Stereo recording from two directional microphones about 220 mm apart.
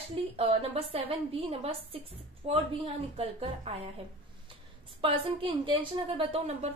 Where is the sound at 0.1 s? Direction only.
25° right (ahead or behind).